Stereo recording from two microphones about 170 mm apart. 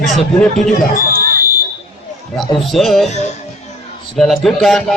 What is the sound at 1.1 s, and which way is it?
Smoke detector, 55° right (ahead or behind).